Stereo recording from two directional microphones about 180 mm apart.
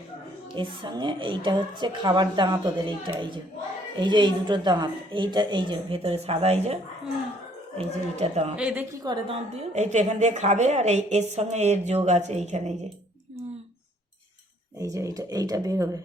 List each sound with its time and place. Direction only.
0.5 s a woman's voice: 25° right (ahead or behind)
7.8 s a woman's voice: 35° right (ahead or behind)
8.5 s a woman's voice: 10° right (ahead or behind)
9.0 s a woman's voice: 30° right (ahead or behind)
14.8 s a woman's voice: 15° right (ahead or behind)